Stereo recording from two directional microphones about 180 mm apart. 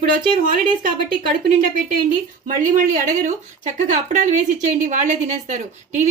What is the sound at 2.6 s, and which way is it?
Speech, 45° right (ahead or behind).